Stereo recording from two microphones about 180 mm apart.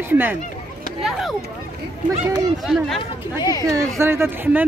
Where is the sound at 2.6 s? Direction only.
Centre (ahead or behind).